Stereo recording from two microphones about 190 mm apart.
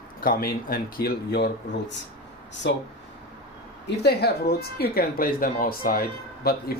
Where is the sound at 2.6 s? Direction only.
65° left (ahead or behind).